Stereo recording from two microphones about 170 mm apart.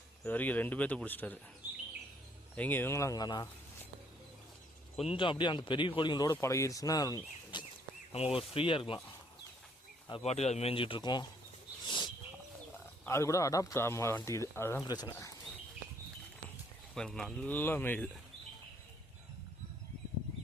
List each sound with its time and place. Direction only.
0.3 s speech: 10° left (ahead or behind)
2.6 s speech: 10° left (ahead or behind)
4.9 s speech: 30° left (ahead or behind)
8.1 s speech: 35° left (ahead or behind)
10.1 s speech: 35° left (ahead or behind)
11.9 s bird: 25° left (ahead or behind)
12.7 s speech: 15° left (ahead or behind)
16.9 s speech: 5° left (ahead or behind)